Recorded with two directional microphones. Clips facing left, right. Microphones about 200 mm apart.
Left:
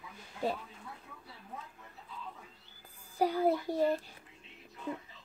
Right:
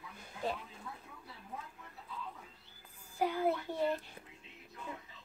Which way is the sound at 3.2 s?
35° left (ahead or behind).